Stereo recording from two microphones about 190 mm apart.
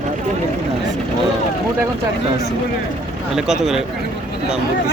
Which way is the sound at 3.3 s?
5° right (ahead or behind).